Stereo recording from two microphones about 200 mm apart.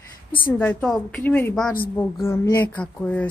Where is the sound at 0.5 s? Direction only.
5° left (ahead or behind).